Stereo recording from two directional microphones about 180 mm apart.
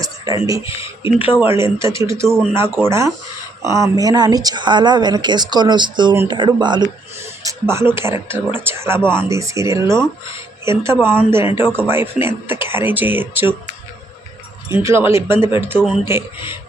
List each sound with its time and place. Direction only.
0.4 s speech: 15° right (ahead or behind)
7.4 s speech: 15° right (ahead or behind)
14.7 s speech: 15° right (ahead or behind)